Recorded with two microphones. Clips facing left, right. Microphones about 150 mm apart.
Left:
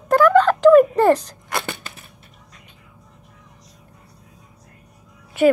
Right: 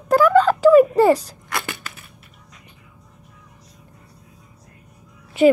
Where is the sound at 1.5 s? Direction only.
30° left (ahead or behind).